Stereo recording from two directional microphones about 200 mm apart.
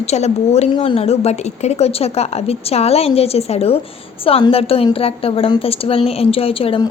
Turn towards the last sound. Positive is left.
turn(degrees=30)  # may be behind; listen again after turning